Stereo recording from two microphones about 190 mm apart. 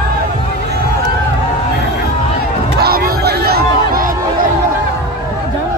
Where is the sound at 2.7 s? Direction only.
55° right (ahead or behind).